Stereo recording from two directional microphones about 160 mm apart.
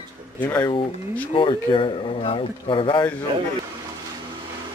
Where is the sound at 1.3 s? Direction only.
30° left (ahead or behind).